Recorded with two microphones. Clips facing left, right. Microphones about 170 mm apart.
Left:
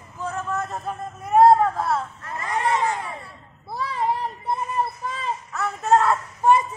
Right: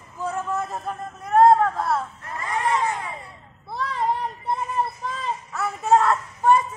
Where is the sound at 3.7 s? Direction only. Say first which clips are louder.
Even; 5° left (ahead or behind).